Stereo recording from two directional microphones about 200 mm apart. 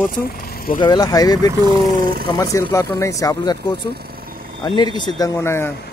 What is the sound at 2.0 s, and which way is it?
Speech, 45° right (ahead or behind).